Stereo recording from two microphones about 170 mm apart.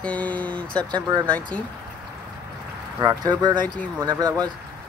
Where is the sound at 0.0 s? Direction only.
10° left (ahead or behind).